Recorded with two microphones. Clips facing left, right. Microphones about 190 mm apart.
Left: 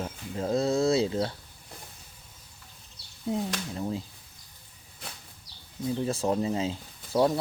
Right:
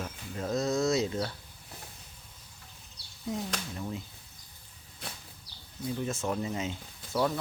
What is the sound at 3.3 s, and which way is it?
Speech, 30° left (ahead or behind).